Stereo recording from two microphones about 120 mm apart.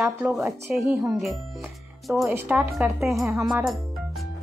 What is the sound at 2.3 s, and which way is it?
Speech, 15° right (ahead or behind).